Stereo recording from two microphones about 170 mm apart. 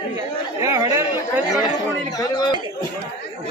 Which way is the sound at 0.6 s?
15° right (ahead or behind).